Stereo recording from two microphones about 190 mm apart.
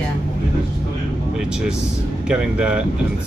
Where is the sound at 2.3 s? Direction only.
5° right (ahead or behind).